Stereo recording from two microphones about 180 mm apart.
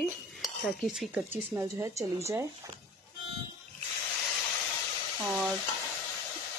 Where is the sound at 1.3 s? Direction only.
15° right (ahead or behind).